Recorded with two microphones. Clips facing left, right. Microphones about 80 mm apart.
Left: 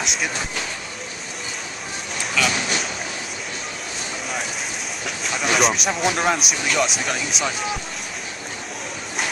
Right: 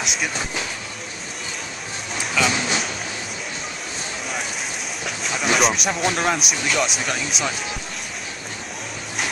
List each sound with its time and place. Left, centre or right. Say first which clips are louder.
0.0 s vehicle: even; centre
2.1 s speech: right 1 dB; centre
5.0 s speech: right 1 dB; centre